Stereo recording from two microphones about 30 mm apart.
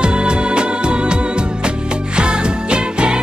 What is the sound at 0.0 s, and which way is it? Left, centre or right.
Music, right.